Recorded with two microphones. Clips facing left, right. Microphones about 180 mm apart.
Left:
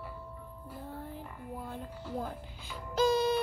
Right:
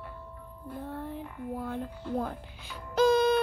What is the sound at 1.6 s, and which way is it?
Music, 65° right (ahead or behind).